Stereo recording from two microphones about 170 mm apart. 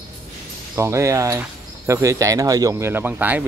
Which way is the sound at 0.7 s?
15° right (ahead or behind).